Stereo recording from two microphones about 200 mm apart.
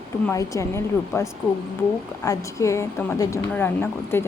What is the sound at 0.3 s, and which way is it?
A woman's voice, 15° left (ahead or behind).